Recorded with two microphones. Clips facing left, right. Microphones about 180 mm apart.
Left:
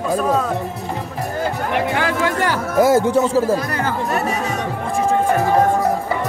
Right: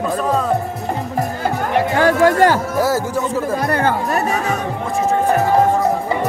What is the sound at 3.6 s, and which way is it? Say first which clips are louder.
Speech: right 5 dB; 60° right (ahead or behind).